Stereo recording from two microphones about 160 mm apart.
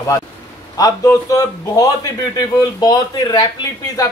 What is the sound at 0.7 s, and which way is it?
A man's voice, 20° left (ahead or behind).